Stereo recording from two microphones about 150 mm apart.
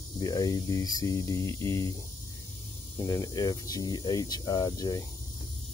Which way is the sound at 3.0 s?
25° left (ahead or behind).